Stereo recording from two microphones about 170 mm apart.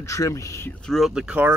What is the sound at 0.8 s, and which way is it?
Speech, centre (ahead or behind).